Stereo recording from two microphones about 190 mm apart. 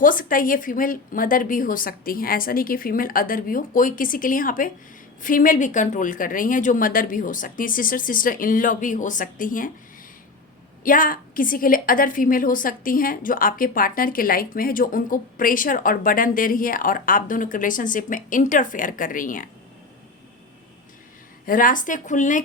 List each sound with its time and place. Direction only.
0.0 s a woman's voice: 45° left (ahead or behind)
10.8 s a woman's voice: 45° left (ahead or behind)
21.4 s a woman's voice: 45° left (ahead or behind)